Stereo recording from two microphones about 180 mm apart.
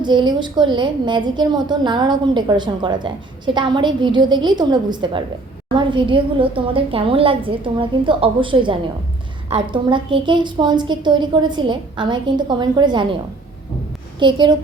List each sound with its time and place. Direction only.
0.0 s a woman's voice: 25° right (ahead or behind)
14.2 s a woman's voice: 25° right (ahead or behind)